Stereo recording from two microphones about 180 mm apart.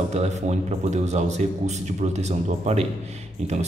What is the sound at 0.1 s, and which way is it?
Speech, 40° right (ahead or behind).